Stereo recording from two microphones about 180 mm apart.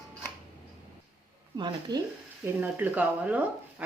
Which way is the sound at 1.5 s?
25° right (ahead or behind).